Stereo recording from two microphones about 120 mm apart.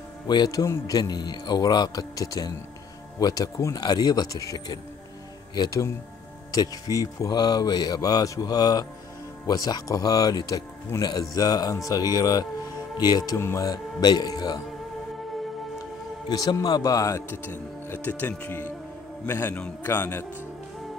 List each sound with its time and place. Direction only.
0.3 s speech: 35° left (ahead or behind)
16.3 s speech: 30° left (ahead or behind)
17.3 s speech: 15° left (ahead or behind)